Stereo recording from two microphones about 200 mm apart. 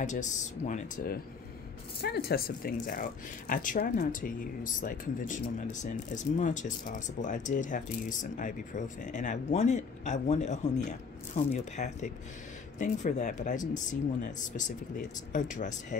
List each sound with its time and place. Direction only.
0.0 s speech: 40° left (ahead or behind)
15.3 s speech: 40° left (ahead or behind)